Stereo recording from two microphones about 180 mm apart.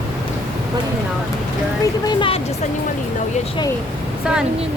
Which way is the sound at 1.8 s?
25° left (ahead or behind).